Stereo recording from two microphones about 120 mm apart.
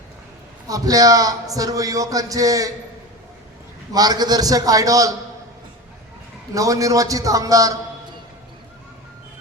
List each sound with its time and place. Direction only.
0.7 s a man's voice: 30° right (ahead or behind)
3.9 s a man's voice: 35° right (ahead or behind)
6.5 s a man's voice: 30° right (ahead or behind)